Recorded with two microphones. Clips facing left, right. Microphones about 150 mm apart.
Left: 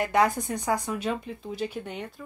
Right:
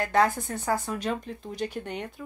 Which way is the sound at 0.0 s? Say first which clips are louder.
Even; 20° left (ahead or behind).